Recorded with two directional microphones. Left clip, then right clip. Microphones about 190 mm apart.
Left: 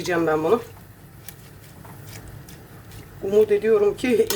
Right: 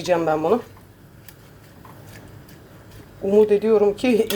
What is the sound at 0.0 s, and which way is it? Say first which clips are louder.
Speech: right 2 dB; centre (ahead or behind).